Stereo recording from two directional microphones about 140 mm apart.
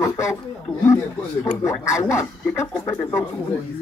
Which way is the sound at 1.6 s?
20° left (ahead or behind).